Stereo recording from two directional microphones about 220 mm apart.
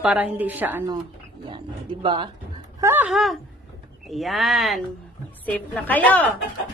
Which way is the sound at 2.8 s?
10° right (ahead or behind).